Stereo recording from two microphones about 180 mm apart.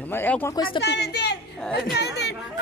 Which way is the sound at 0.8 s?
70° left (ahead or behind).